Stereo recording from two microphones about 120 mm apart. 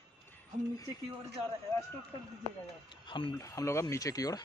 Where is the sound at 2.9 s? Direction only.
40° left (ahead or behind).